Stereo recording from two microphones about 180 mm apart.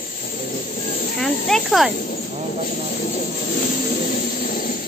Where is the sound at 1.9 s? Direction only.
50° left (ahead or behind).